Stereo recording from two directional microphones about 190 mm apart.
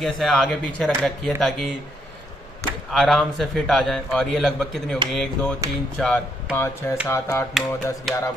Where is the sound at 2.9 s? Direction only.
Centre (ahead or behind).